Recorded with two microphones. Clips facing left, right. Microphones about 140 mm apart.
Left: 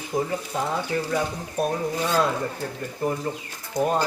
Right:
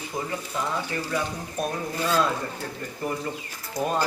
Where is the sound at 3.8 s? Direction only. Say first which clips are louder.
Left 4 dB; 20° left (ahead or behind).